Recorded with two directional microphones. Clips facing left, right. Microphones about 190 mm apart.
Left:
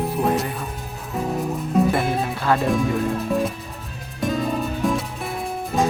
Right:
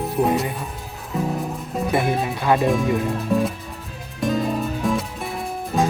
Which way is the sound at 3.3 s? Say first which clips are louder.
Right 1 dB; centre (ahead or behind).